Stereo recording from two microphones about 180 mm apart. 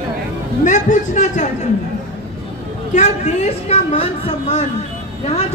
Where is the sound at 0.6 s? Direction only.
45° left (ahead or behind).